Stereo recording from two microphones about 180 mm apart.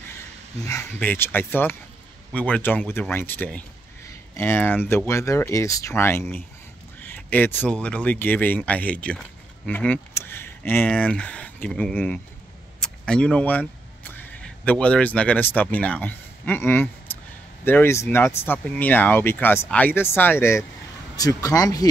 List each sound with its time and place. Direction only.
0.7 s speech: 10° left (ahead or behind)